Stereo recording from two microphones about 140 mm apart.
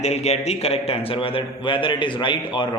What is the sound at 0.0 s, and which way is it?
A man's voice, 50° left (ahead or behind).